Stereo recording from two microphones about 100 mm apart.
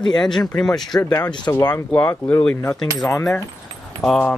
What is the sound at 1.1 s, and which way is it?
Speech, 40° left (ahead or behind).